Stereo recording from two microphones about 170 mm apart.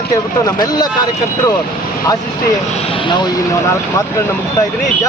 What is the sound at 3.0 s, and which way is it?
Speech, 25° left (ahead or behind).